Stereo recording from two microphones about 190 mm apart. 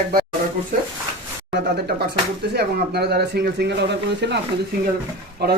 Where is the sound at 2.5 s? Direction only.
60° right (ahead or behind).